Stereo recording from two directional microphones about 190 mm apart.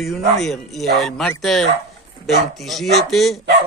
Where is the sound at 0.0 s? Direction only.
Centre (ahead or behind).